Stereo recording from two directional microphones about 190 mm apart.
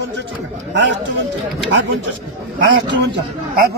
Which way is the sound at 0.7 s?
70° right (ahead or behind).